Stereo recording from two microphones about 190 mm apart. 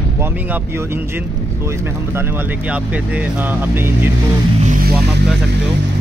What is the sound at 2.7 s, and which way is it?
Speech, 5° right (ahead or behind).